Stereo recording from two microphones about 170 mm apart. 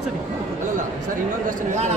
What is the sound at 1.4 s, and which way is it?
Speech, 45° right (ahead or behind).